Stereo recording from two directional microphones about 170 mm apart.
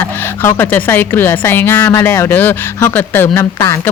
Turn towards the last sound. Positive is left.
turn(degrees=15)  # may be behind; listen again after turning